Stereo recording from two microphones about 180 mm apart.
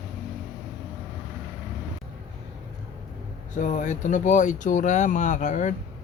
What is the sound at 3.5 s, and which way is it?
Speech, 45° left (ahead or behind).